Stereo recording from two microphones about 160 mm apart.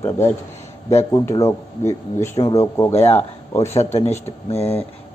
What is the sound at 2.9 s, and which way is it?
Speech, 40° left (ahead or behind).